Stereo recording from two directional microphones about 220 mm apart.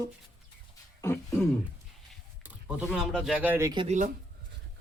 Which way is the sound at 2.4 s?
5° right (ahead or behind).